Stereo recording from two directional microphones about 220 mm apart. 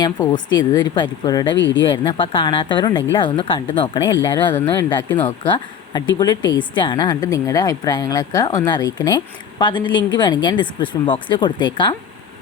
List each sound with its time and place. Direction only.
0.0 s speech: 15° left (ahead or behind)
1.5 s speech: 55° left (ahead or behind)
1.8 s speech: 20° left (ahead or behind)